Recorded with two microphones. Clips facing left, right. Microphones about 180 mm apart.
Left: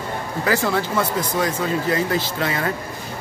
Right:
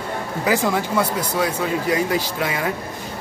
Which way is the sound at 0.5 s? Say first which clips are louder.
Right 1 dB; 15° right (ahead or behind).